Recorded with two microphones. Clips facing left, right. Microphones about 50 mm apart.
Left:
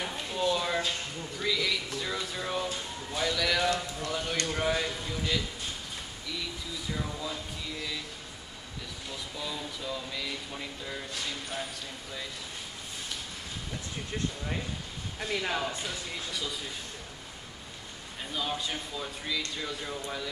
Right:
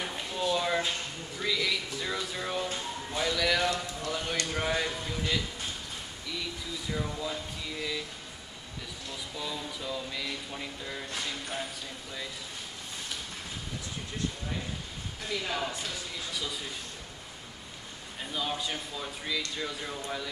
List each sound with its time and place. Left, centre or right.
0.0 s a sound: centre
6.9 s speech: centre
9.4 s speech: centre
15.1 s speech: left
18.3 s speech: centre